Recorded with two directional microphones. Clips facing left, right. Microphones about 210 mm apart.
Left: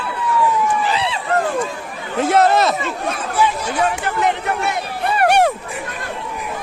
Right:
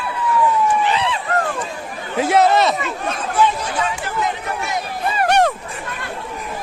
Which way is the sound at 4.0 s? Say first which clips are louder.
Left 4 dB; 65° left (ahead or behind).